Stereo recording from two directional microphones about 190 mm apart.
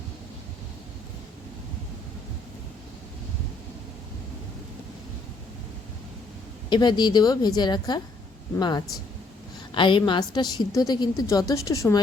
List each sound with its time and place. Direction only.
6.7 s a woman's voice: 25° left (ahead or behind)